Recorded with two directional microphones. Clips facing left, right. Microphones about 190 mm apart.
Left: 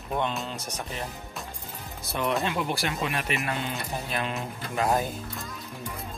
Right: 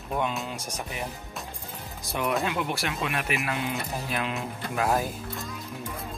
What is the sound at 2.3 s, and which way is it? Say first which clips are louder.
Speech: even; centre (ahead or behind).